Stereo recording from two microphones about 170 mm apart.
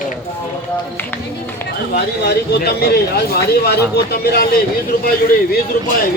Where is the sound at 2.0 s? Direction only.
70° left (ahead or behind).